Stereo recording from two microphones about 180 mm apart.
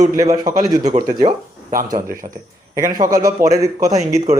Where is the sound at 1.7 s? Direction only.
50° right (ahead or behind).